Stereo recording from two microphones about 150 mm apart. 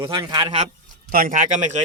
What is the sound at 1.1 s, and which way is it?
Speech, 65° right (ahead or behind).